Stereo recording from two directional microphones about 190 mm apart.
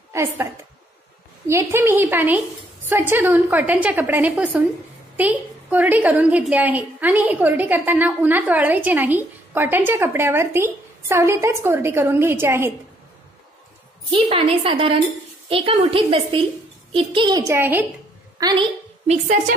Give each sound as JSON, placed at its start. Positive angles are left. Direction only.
{"t": 0.1, "sound": "a woman's voice", "side_deg": -15}
{"t": 1.5, "sound": "a woman's voice", "side_deg": -15}
{"t": 14.1, "sound": "a woman's voice", "side_deg": -30}
{"t": 17.6, "sound": "a woman's voice", "side_deg": -10}
{"t": 18.4, "sound": "a woman's voice", "side_deg": -25}
{"t": 19.0, "sound": "a woman's voice", "side_deg": -40}